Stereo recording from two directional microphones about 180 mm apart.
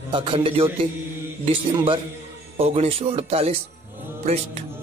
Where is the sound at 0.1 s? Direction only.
30° right (ahead or behind).